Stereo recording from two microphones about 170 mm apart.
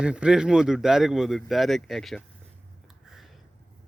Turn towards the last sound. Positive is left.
turn(degrees=0)  # may be behind; listen again after turning